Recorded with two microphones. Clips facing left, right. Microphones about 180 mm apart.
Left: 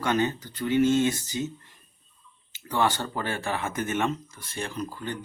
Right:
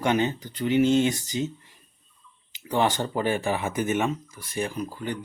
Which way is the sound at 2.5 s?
15° right (ahead or behind).